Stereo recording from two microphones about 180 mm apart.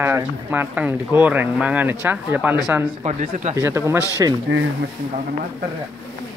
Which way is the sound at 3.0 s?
40° right (ahead or behind).